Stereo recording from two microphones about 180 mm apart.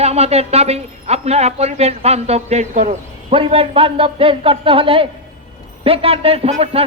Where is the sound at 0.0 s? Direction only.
35° right (ahead or behind).